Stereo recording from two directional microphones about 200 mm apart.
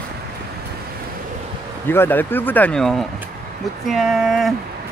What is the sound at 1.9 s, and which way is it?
Speech, 10° left (ahead or behind).